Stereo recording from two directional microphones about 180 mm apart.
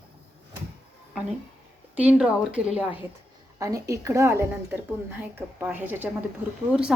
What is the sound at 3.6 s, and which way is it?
A woman's voice, 20° right (ahead or behind).